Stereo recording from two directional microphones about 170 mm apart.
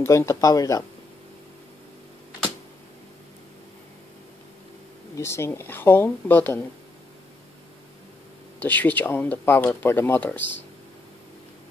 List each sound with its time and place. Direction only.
0.0 s speech: 15° left (ahead or behind)
5.1 s speech: 15° left (ahead or behind)
8.5 s speech: 10° left (ahead or behind)